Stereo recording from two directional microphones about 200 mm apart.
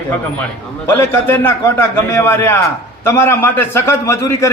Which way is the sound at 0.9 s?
10° left (ahead or behind).